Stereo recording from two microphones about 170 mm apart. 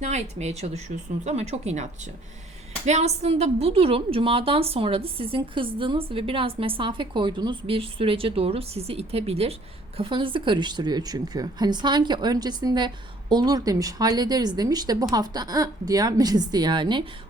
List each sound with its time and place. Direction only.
0.0 s a woman's voice: 40° right (ahead or behind)